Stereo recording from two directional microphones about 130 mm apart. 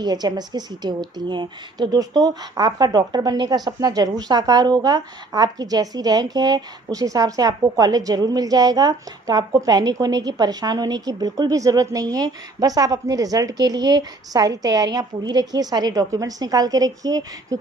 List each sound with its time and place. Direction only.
0.0 s a woman's voice: 30° right (ahead or behind)